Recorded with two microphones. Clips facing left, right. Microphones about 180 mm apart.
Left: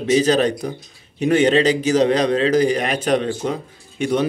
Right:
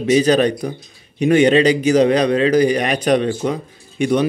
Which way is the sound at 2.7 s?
70° right (ahead or behind).